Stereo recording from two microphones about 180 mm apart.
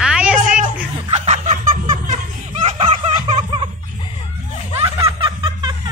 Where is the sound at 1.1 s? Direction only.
35° right (ahead or behind).